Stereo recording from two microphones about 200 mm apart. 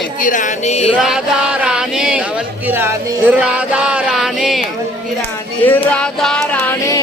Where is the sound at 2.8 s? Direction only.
5° right (ahead or behind).